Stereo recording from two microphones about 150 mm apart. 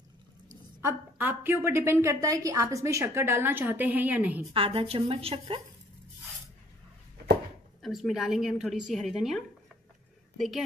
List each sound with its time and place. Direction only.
0.8 s a woman's voice: 15° right (ahead or behind)
4.6 s a woman's voice: 40° right (ahead or behind)
7.8 s a woman's voice: centre (ahead or behind)